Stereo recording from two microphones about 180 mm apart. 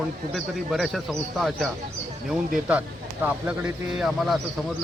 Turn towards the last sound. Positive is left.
turn(degrees=0)  # may be behind; listen again after turning